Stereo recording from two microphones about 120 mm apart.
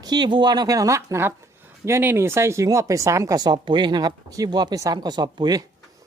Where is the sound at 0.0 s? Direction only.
35° right (ahead or behind).